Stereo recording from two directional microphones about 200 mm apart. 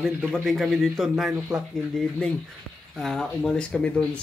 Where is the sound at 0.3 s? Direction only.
Centre (ahead or behind).